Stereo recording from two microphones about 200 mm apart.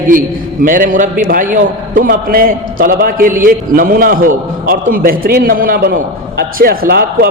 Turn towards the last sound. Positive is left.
turn(degrees=-50)  # may be behind; listen again after turning